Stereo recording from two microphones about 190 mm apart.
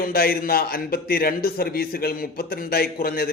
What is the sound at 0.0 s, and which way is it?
A man's voice, 50° left (ahead or behind).